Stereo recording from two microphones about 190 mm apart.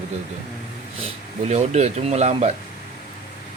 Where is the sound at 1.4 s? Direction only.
35° right (ahead or behind).